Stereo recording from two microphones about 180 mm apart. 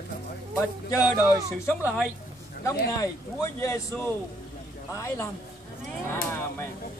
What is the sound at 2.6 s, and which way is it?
A man's voice, 20° left (ahead or behind).